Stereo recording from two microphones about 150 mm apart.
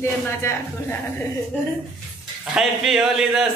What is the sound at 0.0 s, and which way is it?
Speech, 15° left (ahead or behind).